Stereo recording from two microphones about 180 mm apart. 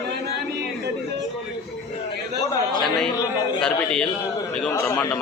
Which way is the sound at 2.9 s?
5° left (ahead or behind).